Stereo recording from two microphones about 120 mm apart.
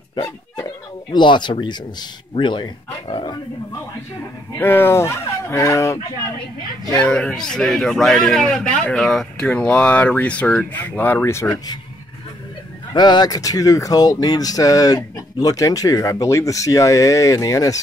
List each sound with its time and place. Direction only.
1.1 s speech: 40° left (ahead or behind)
4.6 s speech: 15° left (ahead or behind)
7.1 s a man's voice: 5° left (ahead or behind)
11.4 s speech: 35° left (ahead or behind)
12.9 s speech: 35° left (ahead or behind)